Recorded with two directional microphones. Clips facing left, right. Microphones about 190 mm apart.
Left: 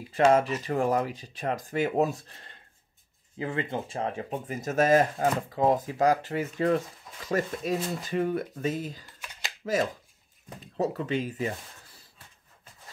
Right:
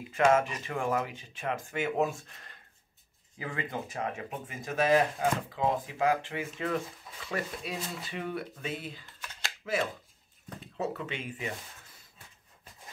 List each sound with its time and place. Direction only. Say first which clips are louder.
0.1 s speech: left 3 dB; 35° left (ahead or behind)